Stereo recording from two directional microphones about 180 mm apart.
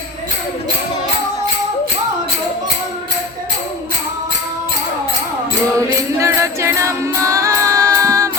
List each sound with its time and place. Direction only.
5.7 s music: 15° right (ahead or behind)